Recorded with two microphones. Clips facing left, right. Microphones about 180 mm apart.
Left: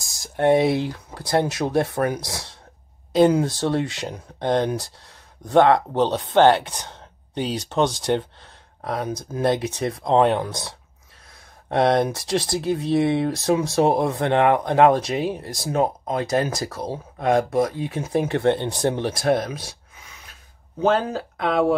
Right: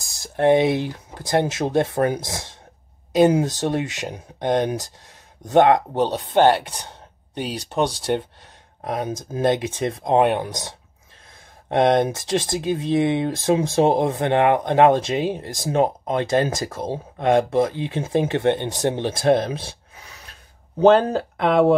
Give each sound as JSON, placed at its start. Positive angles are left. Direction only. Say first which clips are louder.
{"t": 0.2, "sound": "speech", "louder": "right 1 dB", "side_deg": -25}
{"t": 6.9, "sound": "a sound", "louder": "left 1 dB", "side_deg": -10}
{"t": 8.8, "sound": "speech", "louder": "right 1 dB", "side_deg": -20}
{"t": 11.7, "sound": "speech", "louder": "right 1 dB", "side_deg": -20}